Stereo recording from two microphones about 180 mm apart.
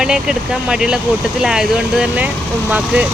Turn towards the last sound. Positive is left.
turn(degrees=-5)  # may be behind; listen again after turning